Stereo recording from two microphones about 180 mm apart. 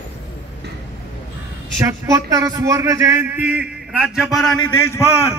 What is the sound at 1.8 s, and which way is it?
A man's voice, 15° right (ahead or behind).